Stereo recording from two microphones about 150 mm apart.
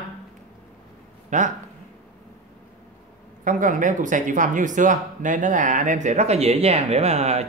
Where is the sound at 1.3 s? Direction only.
55° right (ahead or behind).